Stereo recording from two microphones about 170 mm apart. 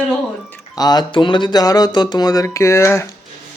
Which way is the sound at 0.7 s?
25° left (ahead or behind).